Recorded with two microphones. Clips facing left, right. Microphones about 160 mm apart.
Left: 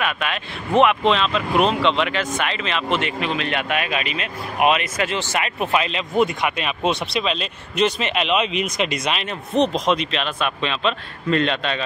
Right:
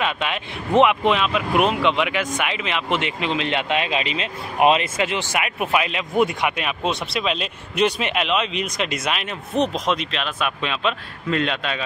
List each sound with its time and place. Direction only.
0.0 s speech: 20° right (ahead or behind)
8.3 s speech: 5° left (ahead or behind)